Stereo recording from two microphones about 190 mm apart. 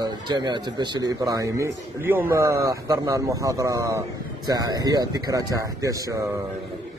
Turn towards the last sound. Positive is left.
turn(degrees=-15)  # may be behind; listen again after turning